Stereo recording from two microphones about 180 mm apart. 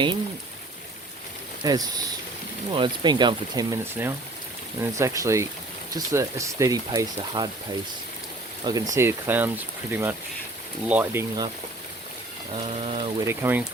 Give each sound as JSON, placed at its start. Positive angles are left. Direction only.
{"t": 1.6, "sound": "speech", "side_deg": -20}
{"t": 8.6, "sound": "speech", "side_deg": -20}
{"t": 12.8, "sound": "speech", "side_deg": -30}
{"t": 13.1, "sound": "speech", "side_deg": -15}